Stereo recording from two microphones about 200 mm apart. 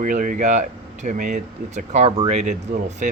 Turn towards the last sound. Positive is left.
turn(degrees=-35)  # may be behind; listen again after turning